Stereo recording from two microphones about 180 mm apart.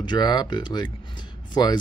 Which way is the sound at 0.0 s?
25° left (ahead or behind).